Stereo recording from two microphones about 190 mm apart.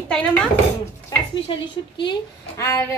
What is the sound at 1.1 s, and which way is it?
A woman's voice, 25° left (ahead or behind).